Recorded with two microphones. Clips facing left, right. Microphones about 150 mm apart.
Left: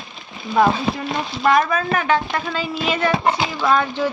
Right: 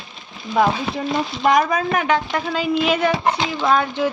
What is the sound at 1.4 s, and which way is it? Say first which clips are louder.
Speech: even; 15° right (ahead or behind).